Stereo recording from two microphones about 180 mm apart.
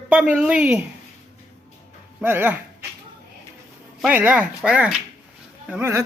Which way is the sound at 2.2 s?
10° right (ahead or behind).